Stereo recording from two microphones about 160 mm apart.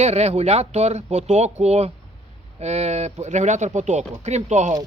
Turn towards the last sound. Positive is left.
turn(degrees=-45)  # may be behind; listen again after turning